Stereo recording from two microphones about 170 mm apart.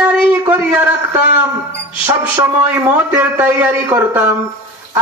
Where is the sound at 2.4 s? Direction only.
15° right (ahead or behind).